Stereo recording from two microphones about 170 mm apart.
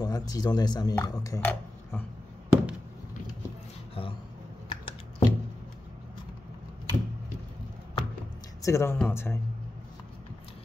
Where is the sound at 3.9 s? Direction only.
30° left (ahead or behind).